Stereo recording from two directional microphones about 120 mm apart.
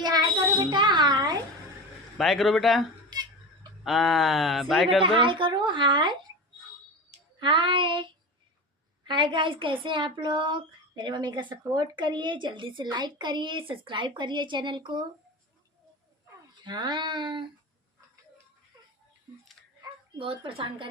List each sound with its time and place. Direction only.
0.0 s a sound: 35° right (ahead or behind)
2.1 s speech: centre (ahead or behind)
3.1 s a sound: 35° right (ahead or behind)
3.8 s speech: centre (ahead or behind)
5.0 s a woman's voice: 45° right (ahead or behind)
7.3 s child singing: 45° right (ahead or behind)
9.0 s a woman's voice: 40° right (ahead or behind)
16.6 s a woman's voice: 40° right (ahead or behind)
20.1 s child singing: 45° right (ahead or behind)